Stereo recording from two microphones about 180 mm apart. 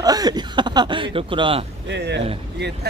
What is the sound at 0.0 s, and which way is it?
Speech, 20° right (ahead or behind).